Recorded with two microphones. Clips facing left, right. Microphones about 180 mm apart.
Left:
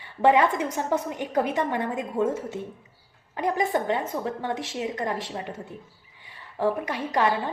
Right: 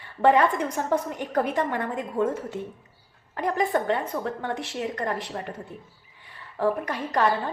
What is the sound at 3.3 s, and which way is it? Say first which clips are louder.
A woman's voice: even; 20° left (ahead or behind).